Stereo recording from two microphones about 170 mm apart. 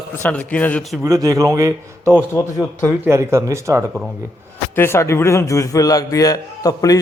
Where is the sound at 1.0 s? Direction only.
20° right (ahead or behind).